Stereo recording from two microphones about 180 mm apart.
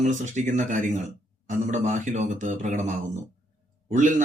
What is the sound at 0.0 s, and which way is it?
A man's voice, 40° right (ahead or behind).